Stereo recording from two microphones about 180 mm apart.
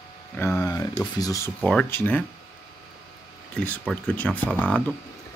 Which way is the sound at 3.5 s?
5° left (ahead or behind).